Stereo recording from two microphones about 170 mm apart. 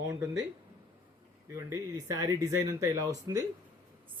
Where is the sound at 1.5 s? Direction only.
20° right (ahead or behind).